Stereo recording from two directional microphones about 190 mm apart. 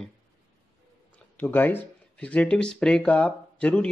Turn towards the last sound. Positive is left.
turn(degrees=5)  # may be behind; listen again after turning